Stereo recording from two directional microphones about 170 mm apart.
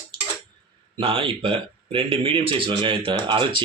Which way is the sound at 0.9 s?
30° right (ahead or behind).